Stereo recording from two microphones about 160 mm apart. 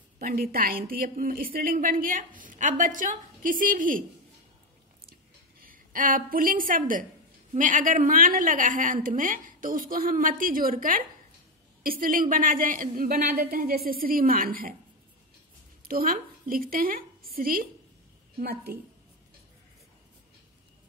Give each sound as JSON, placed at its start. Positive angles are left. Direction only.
{"t": 0.2, "sound": "a woman's voice", "side_deg": -70}
{"t": 5.6, "sound": "a woman's voice", "side_deg": -60}
{"t": 15.8, "sound": "a woman's voice", "side_deg": -65}
{"t": 18.4, "sound": "a woman's voice", "side_deg": -75}